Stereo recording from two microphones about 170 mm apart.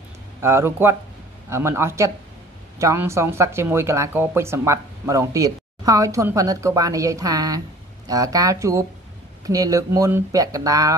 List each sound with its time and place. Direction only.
0.4 s speech: 15° right (ahead or behind)